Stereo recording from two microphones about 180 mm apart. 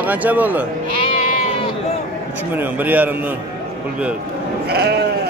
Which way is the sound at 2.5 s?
10° right (ahead or behind).